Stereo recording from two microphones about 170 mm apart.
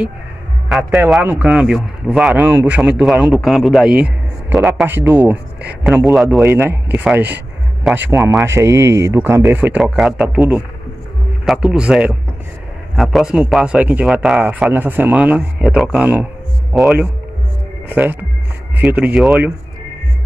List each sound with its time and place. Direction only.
0.7 s speech: 5° right (ahead or behind)